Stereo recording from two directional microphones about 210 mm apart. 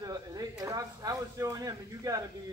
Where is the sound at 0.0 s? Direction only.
15° right (ahead or behind).